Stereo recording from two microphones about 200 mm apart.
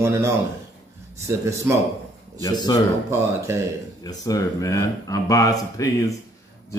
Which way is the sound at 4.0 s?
20° left (ahead or behind).